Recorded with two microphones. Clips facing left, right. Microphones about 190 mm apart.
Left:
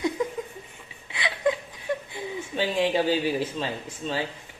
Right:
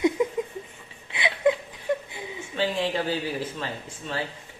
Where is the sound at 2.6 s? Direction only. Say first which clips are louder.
Left 2 dB; 15° left (ahead or behind).